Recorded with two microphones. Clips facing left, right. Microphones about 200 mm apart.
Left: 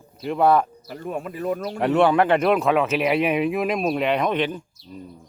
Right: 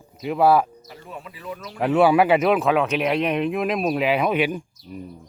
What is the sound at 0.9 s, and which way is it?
Speech, 50° left (ahead or behind).